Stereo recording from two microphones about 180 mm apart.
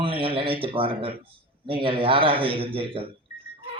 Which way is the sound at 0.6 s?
30° right (ahead or behind).